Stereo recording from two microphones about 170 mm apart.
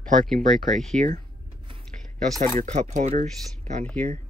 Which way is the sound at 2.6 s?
45° right (ahead or behind).